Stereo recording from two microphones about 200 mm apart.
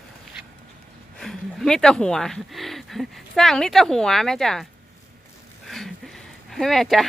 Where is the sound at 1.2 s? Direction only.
Centre (ahead or behind).